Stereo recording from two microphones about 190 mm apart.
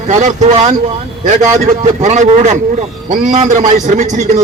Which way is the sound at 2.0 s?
40° right (ahead or behind).